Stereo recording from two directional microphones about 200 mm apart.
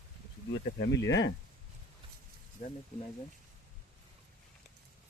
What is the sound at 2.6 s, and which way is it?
Speech, 50° left (ahead or behind).